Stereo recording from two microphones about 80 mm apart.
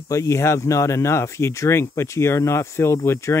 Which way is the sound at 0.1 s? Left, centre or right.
Left.